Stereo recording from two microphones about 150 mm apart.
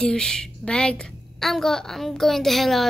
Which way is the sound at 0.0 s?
5° left (ahead or behind).